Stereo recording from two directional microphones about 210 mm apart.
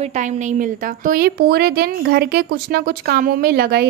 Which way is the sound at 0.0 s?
35° right (ahead or behind).